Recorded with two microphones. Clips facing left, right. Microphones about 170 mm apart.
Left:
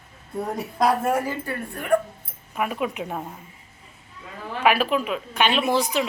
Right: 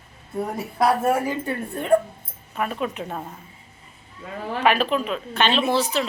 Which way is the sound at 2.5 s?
10° left (ahead or behind).